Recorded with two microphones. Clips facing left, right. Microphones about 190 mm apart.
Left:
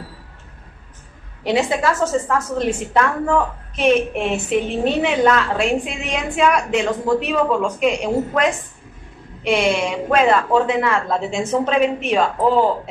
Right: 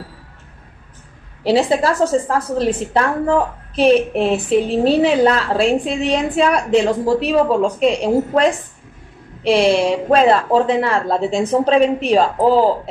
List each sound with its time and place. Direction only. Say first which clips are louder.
1.4 s a woman's voice: right 4 dB; 30° right (ahead or behind)